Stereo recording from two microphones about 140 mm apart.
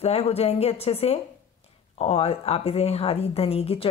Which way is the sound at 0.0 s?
45° left (ahead or behind).